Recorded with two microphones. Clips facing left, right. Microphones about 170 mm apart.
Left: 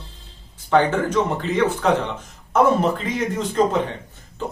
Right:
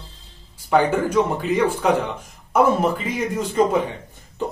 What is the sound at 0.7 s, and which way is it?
A man's voice, 10° right (ahead or behind).